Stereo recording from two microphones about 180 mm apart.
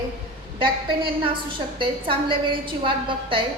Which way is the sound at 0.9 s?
30° right (ahead or behind).